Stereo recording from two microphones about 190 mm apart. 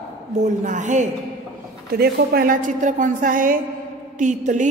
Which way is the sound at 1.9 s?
55° right (ahead or behind).